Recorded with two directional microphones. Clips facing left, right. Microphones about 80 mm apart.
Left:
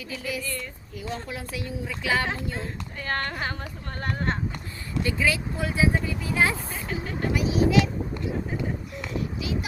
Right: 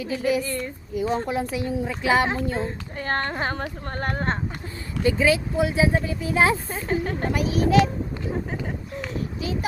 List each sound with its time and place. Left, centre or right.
0.0 s speech: right
3.5 s a child's voice: right